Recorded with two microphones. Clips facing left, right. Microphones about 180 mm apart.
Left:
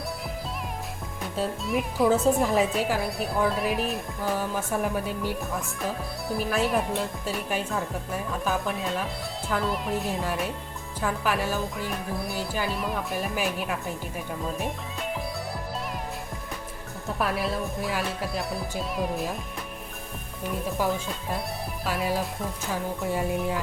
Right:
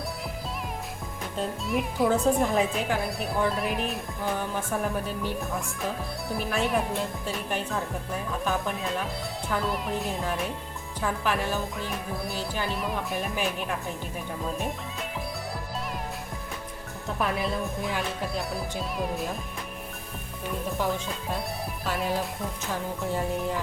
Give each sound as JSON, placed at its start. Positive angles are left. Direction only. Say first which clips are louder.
{"t": 1.4, "sound": "speech", "louder": "left 1 dB", "side_deg": 0}
{"t": 17.2, "sound": "speech", "louder": "left 1 dB", "side_deg": 0}
{"t": 20.7, "sound": "speech", "louder": "left 2 dB", "side_deg": 0}
{"t": 22.7, "sound": "music", "louder": "left 2 dB", "side_deg": 10}